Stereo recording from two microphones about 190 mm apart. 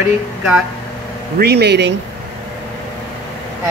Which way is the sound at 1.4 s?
60° right (ahead or behind).